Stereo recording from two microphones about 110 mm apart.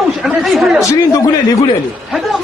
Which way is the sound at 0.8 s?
35° left (ahead or behind).